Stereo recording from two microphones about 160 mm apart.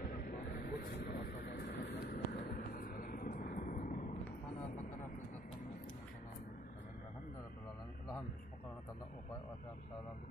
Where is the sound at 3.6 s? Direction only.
60° left (ahead or behind).